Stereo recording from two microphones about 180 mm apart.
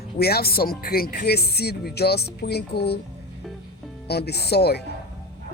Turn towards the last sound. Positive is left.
turn(degrees=65)  # may be behind; listen again after turning